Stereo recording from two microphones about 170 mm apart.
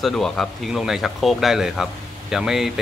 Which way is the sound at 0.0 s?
Centre (ahead or behind).